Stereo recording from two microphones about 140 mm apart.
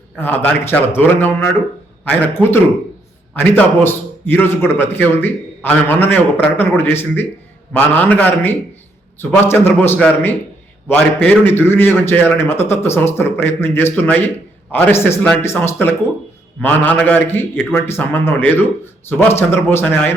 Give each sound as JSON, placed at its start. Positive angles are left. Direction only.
{"t": 0.2, "sound": "a man's voice", "side_deg": 10}